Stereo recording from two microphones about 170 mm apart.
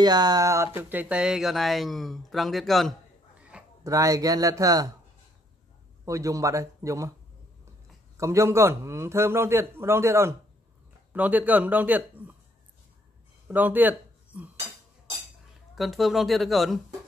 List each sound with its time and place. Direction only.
0.0 s a man's voice: 25° right (ahead or behind); by 2.9 s centre (ahead or behind)
3.3 s a sound: 5° right (ahead or behind)
3.8 s a man's voice: 20° right (ahead or behind)
6.0 s a man's voice: 20° right (ahead or behind)
8.2 s a man's voice: 15° right (ahead or behind)
13.5 s speech: 10° right (ahead or behind)
15.7 s speech: centre (ahead or behind)